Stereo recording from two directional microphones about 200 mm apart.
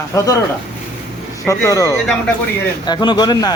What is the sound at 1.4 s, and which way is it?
Speech, 15° left (ahead or behind).